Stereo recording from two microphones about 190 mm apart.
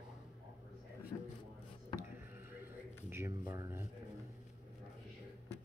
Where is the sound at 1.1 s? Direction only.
20° left (ahead or behind).